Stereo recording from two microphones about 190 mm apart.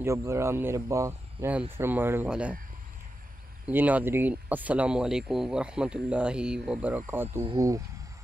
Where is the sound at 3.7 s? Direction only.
10° right (ahead or behind).